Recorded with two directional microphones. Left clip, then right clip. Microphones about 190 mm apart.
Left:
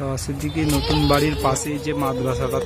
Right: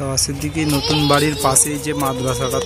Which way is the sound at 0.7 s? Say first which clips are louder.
Right 3 dB; 15° left (ahead or behind).